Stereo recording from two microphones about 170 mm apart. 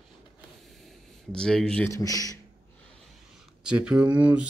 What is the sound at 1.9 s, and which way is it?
Speech, 20° left (ahead or behind).